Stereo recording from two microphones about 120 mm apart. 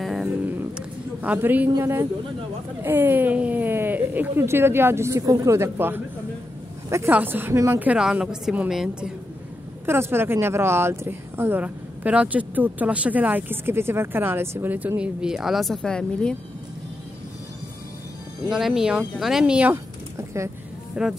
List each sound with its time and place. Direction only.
0.0 s music: centre (ahead or behind)
0.7 s a man's voice: 15° right (ahead or behind)
9.8 s speech: 20° right (ahead or behind); by 16.3 s 5° left (ahead or behind)
18.5 s speech: 5° right (ahead or behind)
19.7 s a sound: 25° right (ahead or behind)
20.9 s speech: 5° right (ahead or behind)